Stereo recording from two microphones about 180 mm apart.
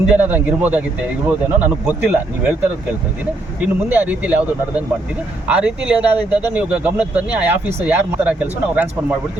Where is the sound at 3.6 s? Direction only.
10° right (ahead or behind).